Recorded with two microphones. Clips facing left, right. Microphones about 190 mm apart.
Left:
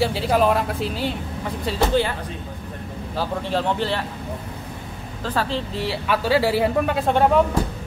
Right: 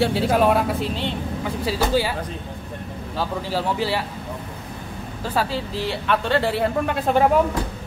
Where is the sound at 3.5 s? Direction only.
5° right (ahead or behind).